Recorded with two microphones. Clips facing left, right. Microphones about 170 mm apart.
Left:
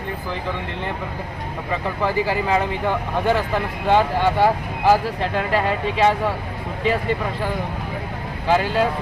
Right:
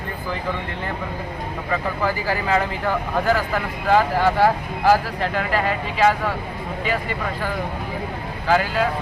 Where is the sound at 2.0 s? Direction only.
25° left (ahead or behind).